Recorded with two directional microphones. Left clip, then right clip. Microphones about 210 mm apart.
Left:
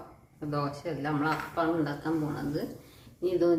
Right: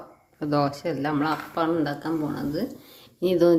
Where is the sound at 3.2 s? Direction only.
50° right (ahead or behind).